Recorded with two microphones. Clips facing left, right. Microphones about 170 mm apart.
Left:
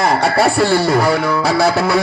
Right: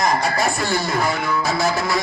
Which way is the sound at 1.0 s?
70° left (ahead or behind).